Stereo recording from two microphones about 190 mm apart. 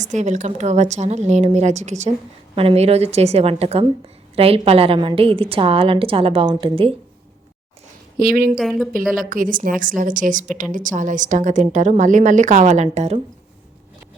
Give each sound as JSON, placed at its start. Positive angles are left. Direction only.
{"t": 0.0, "sound": "a woman's voice", "side_deg": -40}
{"t": 8.2, "sound": "a woman's voice", "side_deg": -50}
{"t": 8.5, "sound": "speech", "side_deg": 0}
{"t": 9.1, "sound": "speech", "side_deg": -45}